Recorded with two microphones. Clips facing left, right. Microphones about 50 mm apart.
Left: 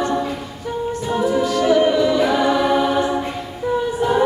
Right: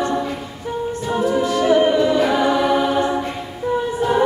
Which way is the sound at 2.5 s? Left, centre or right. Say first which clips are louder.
Even; centre.